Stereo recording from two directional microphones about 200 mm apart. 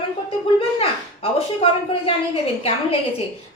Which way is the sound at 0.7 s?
30° left (ahead or behind).